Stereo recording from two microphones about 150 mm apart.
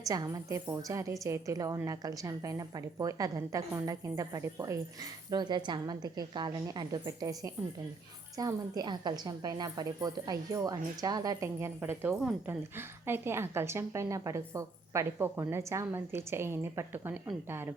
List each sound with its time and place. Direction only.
0.1 s a woman's voice: 25° right (ahead or behind)